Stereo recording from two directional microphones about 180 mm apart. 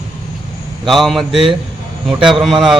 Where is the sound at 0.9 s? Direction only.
Centre (ahead or behind).